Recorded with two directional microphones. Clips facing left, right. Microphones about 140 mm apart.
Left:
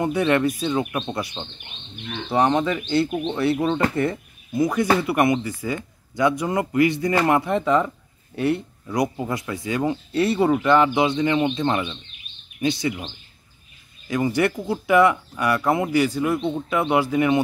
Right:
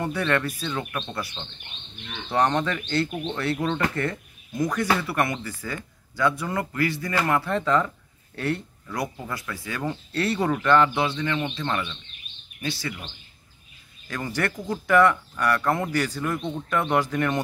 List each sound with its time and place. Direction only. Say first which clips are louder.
0.0 s speech: left 5 dB; 15° left (ahead or behind)
2.2 s speech: left 3 dB; 10° left (ahead or behind)